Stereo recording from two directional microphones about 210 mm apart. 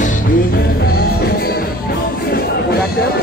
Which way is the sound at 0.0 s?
40° left (ahead or behind).